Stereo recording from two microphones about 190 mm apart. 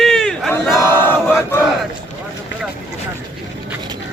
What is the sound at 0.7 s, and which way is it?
Battle cry, 10° left (ahead or behind).